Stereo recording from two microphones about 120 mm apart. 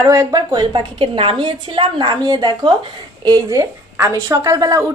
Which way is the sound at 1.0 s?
45° right (ahead or behind).